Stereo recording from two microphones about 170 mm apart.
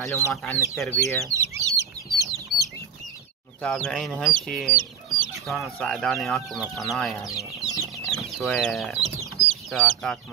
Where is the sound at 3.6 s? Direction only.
5° left (ahead or behind).